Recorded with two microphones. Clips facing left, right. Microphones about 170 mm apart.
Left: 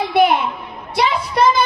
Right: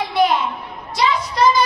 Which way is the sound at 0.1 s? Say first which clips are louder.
Left 3 dB; 60° left (ahead or behind).